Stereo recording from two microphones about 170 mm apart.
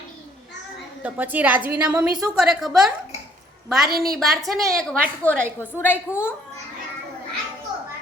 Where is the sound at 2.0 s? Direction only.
20° right (ahead or behind).